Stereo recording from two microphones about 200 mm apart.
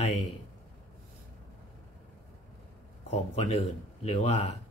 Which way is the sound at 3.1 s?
30° left (ahead or behind).